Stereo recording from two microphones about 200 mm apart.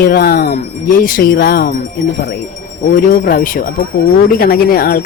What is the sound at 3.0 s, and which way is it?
Speech, 45° left (ahead or behind).